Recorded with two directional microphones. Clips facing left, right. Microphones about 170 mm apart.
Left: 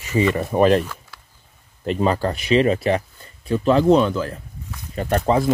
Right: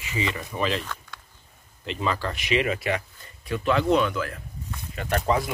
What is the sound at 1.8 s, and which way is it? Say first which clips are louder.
Speech: left 8 dB; 45° left (ahead or behind).